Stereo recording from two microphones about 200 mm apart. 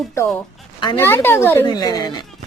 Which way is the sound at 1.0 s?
10° left (ahead or behind).